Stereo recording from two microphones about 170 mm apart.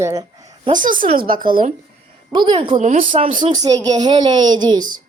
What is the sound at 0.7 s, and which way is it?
Speech, 50° right (ahead or behind).